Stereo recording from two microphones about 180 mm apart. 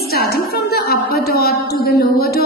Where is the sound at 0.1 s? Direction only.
60° left (ahead or behind).